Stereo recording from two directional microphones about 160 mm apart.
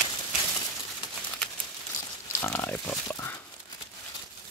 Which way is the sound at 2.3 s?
15° left (ahead or behind).